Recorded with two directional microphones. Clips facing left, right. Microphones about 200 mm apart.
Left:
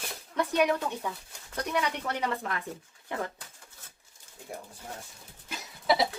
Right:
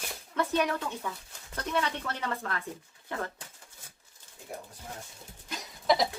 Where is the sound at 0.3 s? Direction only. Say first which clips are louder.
Left 2 dB; 15° left (ahead or behind).